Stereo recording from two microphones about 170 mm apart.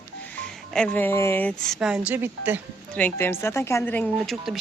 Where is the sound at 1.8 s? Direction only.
5° right (ahead or behind).